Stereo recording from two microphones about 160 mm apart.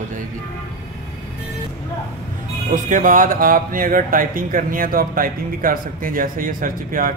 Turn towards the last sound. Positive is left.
turn(degrees=-60)  # may be behind; listen again after turning